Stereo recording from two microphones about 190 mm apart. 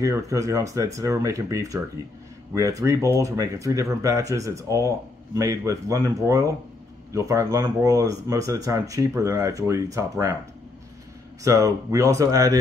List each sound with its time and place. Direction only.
0.0 s speech: 15° right (ahead or behind)
11.4 s speech: 15° right (ahead or behind)